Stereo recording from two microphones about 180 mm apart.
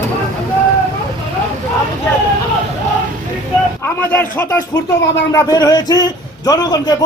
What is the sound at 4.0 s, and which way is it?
Speech, 10° left (ahead or behind).